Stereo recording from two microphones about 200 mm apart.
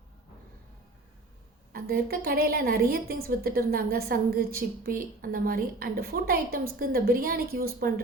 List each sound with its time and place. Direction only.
1.7 s a woman's voice: 50° right (ahead or behind)